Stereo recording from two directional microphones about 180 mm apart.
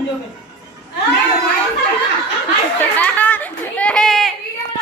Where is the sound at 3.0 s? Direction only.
10° left (ahead or behind).